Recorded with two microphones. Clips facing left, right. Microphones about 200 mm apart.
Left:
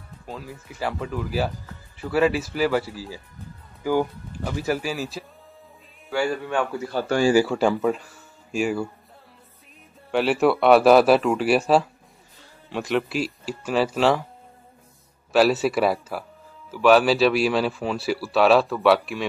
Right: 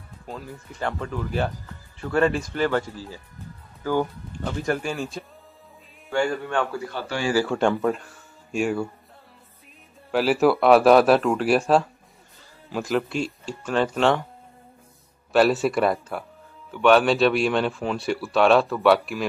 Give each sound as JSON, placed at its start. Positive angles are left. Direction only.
{"t": 0.3, "sound": "speech", "side_deg": 5}
{"t": 6.9, "sound": "speech", "side_deg": 40}
{"t": 7.3, "sound": "speech", "side_deg": 5}
{"t": 10.1, "sound": "speech", "side_deg": 0}
{"t": 15.3, "sound": "speech", "side_deg": 0}